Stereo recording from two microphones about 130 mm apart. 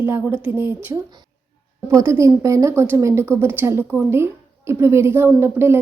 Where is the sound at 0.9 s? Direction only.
30° right (ahead or behind).